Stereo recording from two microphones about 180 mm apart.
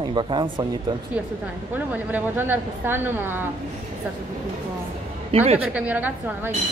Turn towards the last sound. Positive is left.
turn(degrees=-10)  # may be behind; listen again after turning